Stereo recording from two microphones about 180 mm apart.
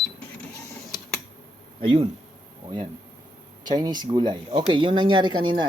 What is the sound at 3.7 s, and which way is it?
Speech, 20° right (ahead or behind).